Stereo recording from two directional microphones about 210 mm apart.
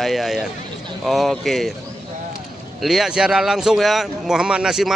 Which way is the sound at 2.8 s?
Centre (ahead or behind).